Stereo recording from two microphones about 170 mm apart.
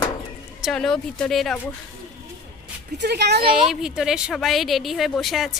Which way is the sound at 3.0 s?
80° right.